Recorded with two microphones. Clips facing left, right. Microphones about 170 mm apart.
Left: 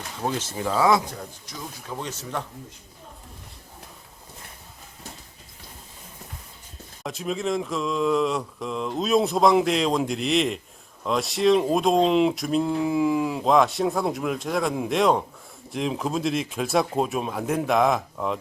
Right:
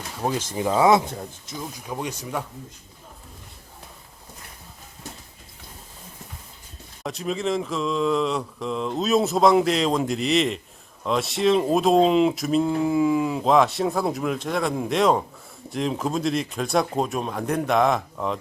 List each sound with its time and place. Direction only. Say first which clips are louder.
0.2 s speech: right 2 dB; 10° right (ahead or behind)
1.9 s speech: right 2 dB; 15° right (ahead or behind)
7.0 s speech: right 1 dB; centre (ahead or behind)